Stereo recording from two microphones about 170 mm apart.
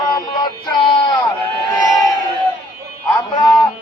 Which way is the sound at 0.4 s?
25° left (ahead or behind).